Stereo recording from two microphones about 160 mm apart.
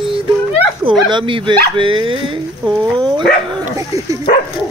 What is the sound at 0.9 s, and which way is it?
Speech, 30° right (ahead or behind).